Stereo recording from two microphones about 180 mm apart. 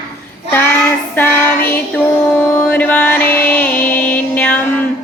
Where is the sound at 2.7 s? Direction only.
5° left (ahead or behind).